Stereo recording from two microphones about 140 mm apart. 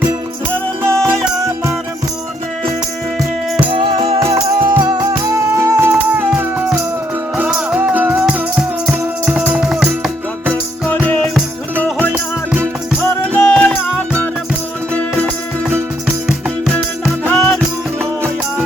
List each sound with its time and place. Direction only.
0.9 s music: 5° left (ahead or behind)
3.7 s music: 35° right (ahead or behind)
4.8 s music: 30° right (ahead or behind)
5.5 s music: 15° right (ahead or behind)
11.8 s music: 10° left (ahead or behind)
12.1 s music: 5° right (ahead or behind)
13.0 s music: 15° left (ahead or behind)
17.2 s music: centre (ahead or behind)